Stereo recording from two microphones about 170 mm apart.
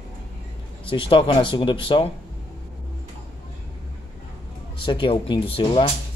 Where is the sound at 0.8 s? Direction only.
30° left (ahead or behind).